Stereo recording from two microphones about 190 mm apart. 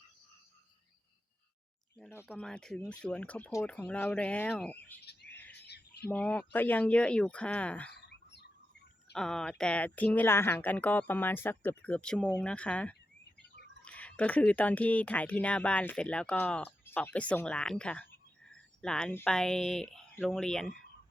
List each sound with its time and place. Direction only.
2.2 s speech: centre (ahead or behind)
4.9 s bird: 60° left (ahead or behind)
6.1 s speech: 10° left (ahead or behind)
7.9 s bird: 60° left (ahead or behind)
9.1 s speech: 5° left (ahead or behind)